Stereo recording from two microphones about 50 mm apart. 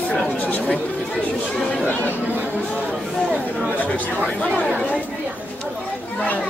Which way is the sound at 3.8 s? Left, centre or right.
Left.